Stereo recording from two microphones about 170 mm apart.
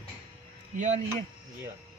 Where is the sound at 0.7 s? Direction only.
45° right (ahead or behind).